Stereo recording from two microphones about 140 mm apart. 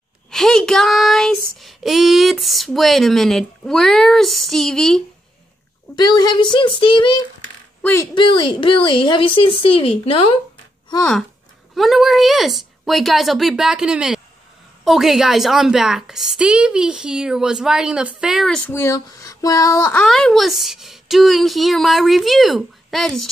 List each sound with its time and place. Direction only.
0.3 s child singing: centre (ahead or behind)
5.9 s a woman's voice: 30° left (ahead or behind)
7.8 s speech: 15° left (ahead or behind)
8.1 s a woman's voice: 35° left (ahead or behind)
11.7 s child singing: centre (ahead or behind)
18.7 s speech: 20° left (ahead or behind)
20.0 s child singing: 5° left (ahead or behind)